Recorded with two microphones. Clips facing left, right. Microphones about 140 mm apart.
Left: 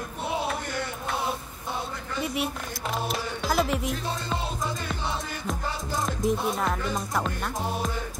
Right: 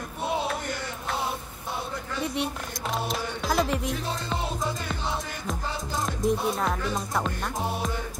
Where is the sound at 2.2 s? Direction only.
5° left (ahead or behind).